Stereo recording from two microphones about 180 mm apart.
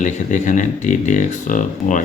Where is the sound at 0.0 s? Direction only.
40° left (ahead or behind).